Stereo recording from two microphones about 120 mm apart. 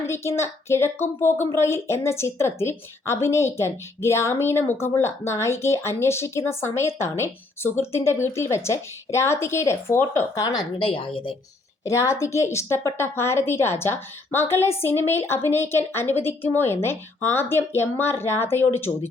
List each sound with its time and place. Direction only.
0.0 s a woman's voice: 20° left (ahead or behind); by 11.3 s 45° left (ahead or behind)
11.9 s a woman's voice: 25° left (ahead or behind)